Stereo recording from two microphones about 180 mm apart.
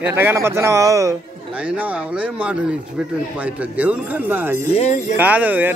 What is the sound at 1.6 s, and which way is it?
Speech, 5° right (ahead or behind).